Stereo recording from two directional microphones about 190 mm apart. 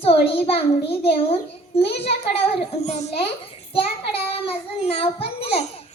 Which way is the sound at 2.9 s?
35° left (ahead or behind).